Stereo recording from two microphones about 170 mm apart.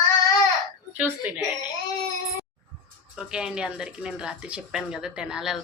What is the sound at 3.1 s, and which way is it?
Speech, 5° right (ahead or behind).